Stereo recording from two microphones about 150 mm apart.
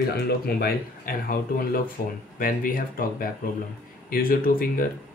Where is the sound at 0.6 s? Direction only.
75° left (ahead or behind).